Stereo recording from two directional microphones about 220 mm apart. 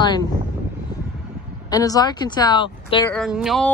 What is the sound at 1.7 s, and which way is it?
Speech, 15° left (ahead or behind).